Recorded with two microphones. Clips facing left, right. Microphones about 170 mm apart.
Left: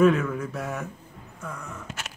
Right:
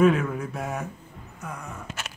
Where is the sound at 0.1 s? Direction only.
15° right (ahead or behind).